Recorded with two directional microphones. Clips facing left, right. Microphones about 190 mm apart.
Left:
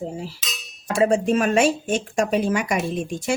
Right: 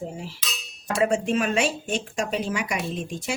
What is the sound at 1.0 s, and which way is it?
Speech, 35° left (ahead or behind).